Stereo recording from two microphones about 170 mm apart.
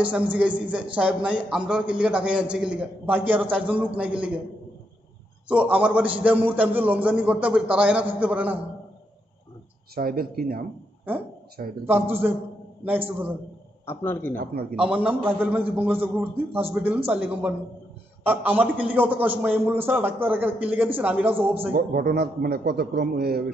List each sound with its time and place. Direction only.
0.0 s a man's voice: 10° right (ahead or behind)
5.5 s a man's voice: 10° right (ahead or behind)
9.9 s a man's voice: 60° right (ahead or behind)
11.8 s a man's voice: 15° right (ahead or behind)
13.8 s a man's voice: 10° left (ahead or behind)
14.4 s a man's voice: 65° right (ahead or behind)
14.8 s a man's voice: 5° right (ahead or behind)
21.7 s a man's voice: 60° right (ahead or behind)